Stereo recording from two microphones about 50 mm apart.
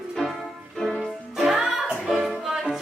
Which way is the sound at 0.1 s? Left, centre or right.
Centre.